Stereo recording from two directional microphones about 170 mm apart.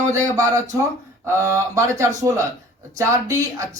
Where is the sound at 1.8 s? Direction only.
15° right (ahead or behind).